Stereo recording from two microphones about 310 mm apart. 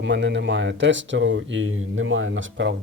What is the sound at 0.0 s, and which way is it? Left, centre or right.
Speech, right.